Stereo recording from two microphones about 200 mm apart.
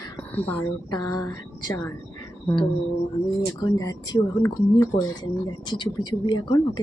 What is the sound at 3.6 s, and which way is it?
Speech, 20° left (ahead or behind).